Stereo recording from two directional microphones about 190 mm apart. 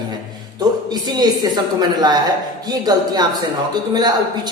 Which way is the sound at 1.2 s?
20° right (ahead or behind).